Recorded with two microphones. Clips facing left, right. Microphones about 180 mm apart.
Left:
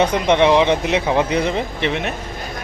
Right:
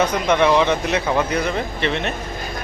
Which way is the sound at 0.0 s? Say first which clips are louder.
Left 2 dB; 25° left (ahead or behind).